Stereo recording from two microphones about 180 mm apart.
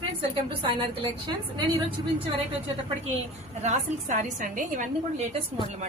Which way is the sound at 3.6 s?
40° right (ahead or behind).